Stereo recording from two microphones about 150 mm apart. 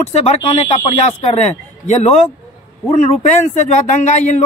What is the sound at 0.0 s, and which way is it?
A man's voice, 45° left (ahead or behind).